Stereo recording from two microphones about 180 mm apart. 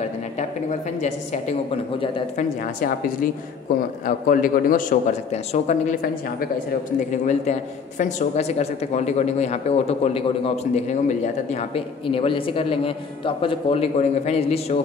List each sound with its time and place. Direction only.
0.4 s a woman's voice: 40° left (ahead or behind)
2.0 s speech: 30° left (ahead or behind)
4.0 s a man's voice: 50° left (ahead or behind)
8.0 s speech: 40° left (ahead or behind)